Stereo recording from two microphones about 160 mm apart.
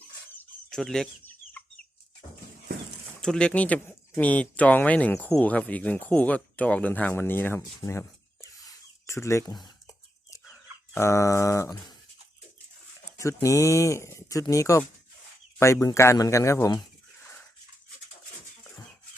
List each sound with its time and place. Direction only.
0.3 s chicken: centre (ahead or behind)
3.2 s speech: 5° left (ahead or behind)
7.8 s a sound: 15° left (ahead or behind)
10.9 s speech: 20° left (ahead or behind)
13.1 s speech: 20° left (ahead or behind)